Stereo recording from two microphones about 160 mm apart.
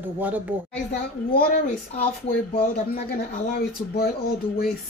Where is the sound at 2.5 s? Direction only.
70° left (ahead or behind).